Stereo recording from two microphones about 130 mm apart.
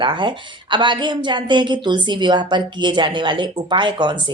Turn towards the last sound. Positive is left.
turn(degrees=-35)  # may be behind; listen again after turning